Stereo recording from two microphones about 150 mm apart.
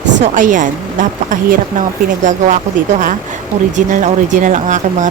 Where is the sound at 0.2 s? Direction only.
60° right (ahead or behind).